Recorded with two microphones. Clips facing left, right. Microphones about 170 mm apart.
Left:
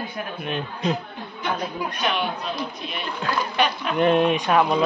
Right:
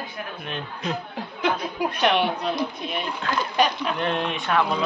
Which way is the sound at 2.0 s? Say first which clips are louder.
Right 4 dB; 70° right (ahead or behind).